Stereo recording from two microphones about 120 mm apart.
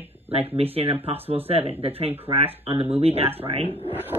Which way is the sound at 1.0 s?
55° right (ahead or behind).